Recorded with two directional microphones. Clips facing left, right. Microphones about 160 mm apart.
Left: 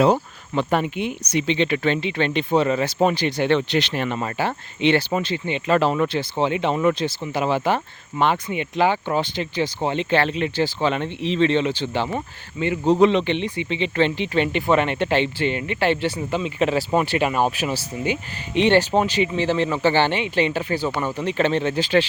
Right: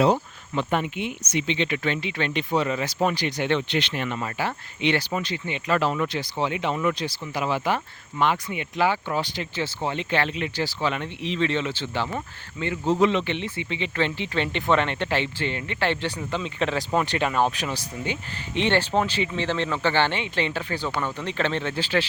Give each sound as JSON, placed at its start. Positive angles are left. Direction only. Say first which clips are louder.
{"t": 0.5, "sound": "speech", "louder": "left 4 dB", "side_deg": 40}